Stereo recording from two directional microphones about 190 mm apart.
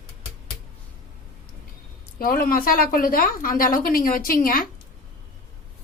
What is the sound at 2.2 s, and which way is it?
A woman's voice, 50° left (ahead or behind).